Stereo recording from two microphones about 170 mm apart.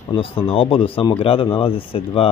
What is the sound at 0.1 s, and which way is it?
Speech, 35° left (ahead or behind).